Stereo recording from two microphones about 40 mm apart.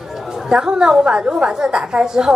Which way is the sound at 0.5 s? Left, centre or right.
Right.